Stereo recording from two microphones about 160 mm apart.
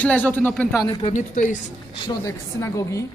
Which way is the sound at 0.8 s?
25° left (ahead or behind).